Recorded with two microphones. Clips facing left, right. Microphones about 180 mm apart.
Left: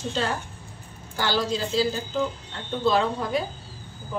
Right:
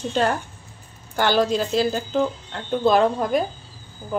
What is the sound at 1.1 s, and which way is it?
A woman's voice, 55° right (ahead or behind).